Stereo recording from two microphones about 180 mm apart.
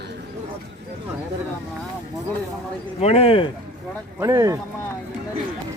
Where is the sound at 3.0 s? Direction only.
35° left (ahead or behind).